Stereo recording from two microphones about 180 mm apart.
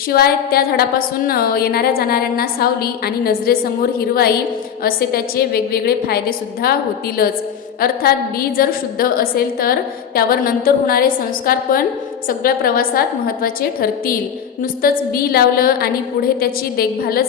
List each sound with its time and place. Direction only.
0.1 s a woman's voice: 60° left (ahead or behind)